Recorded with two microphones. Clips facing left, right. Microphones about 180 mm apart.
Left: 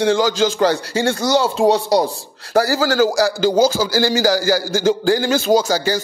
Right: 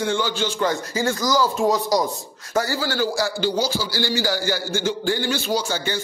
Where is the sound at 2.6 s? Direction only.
90° left.